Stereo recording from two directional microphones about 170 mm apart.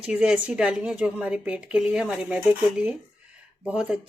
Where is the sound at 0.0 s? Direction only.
5° right (ahead or behind).